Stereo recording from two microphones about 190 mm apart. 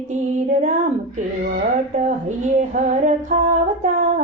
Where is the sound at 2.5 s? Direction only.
40° right (ahead or behind).